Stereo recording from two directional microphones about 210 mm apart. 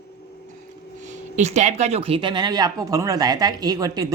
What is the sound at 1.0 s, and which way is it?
Speech, 35° right (ahead or behind).